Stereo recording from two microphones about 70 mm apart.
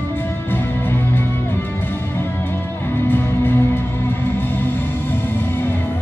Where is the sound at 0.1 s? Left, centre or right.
Left.